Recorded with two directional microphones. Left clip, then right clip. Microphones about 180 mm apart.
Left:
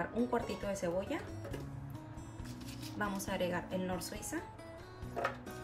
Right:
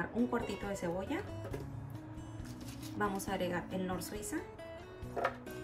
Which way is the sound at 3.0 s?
Centre (ahead or behind).